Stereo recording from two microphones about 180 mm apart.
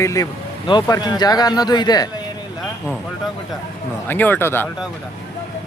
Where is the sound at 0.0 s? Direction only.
20° left (ahead or behind).